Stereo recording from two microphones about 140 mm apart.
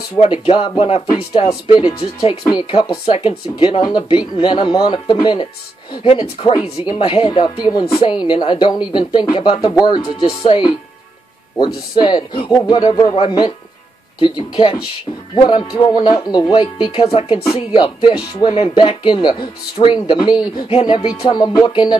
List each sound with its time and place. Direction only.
0.2 s speech: 40° left (ahead or behind)
1.5 s speech: 30° left (ahead or behind)